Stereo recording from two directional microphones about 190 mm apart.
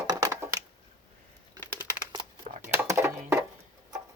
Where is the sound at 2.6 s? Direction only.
10° right (ahead or behind).